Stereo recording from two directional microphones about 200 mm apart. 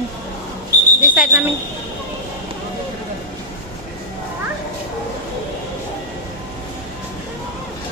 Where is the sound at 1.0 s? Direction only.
5° right (ahead or behind).